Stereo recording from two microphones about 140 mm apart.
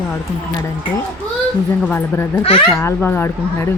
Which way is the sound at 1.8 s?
15° left (ahead or behind).